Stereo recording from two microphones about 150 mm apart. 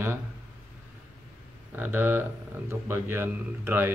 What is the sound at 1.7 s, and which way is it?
Speech, 15° right (ahead or behind).